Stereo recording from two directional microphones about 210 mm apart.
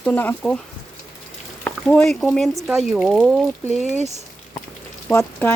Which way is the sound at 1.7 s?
5° left (ahead or behind).